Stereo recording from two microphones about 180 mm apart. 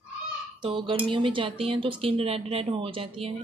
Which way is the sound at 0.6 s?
30° right (ahead or behind).